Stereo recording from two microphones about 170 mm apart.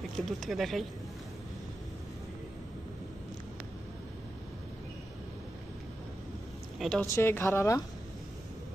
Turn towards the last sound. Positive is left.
turn(degrees=15)  # may be behind; listen again after turning